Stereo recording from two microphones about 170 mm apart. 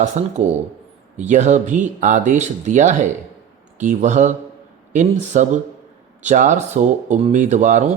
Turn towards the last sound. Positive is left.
turn(degrees=-45)  # may be behind; listen again after turning